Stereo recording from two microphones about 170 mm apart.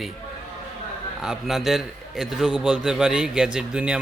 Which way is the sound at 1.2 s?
5° right (ahead or behind).